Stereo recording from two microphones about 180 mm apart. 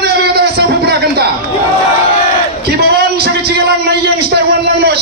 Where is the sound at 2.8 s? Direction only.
60° right (ahead or behind).